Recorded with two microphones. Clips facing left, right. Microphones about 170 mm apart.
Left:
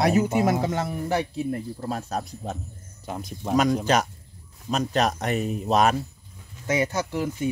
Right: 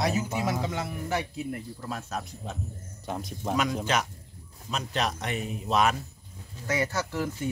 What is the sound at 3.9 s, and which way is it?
Speech, 40° left (ahead or behind).